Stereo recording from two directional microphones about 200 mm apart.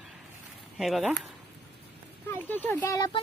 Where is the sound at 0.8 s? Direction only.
Centre (ahead or behind).